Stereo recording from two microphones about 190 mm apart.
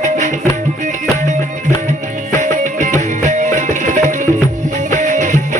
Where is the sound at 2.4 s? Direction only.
40° right (ahead or behind).